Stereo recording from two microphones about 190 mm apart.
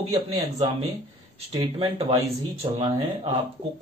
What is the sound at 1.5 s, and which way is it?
Speech, 25° right (ahead or behind).